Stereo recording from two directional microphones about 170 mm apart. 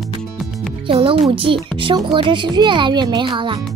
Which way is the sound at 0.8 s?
35° right (ahead or behind).